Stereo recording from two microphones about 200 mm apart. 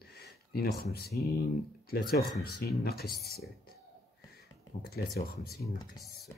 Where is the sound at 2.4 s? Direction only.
50° left (ahead or behind).